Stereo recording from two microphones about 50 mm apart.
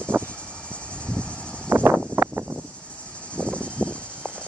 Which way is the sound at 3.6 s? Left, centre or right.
Left.